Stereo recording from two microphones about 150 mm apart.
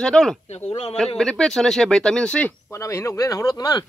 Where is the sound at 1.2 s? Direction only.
5° left (ahead or behind).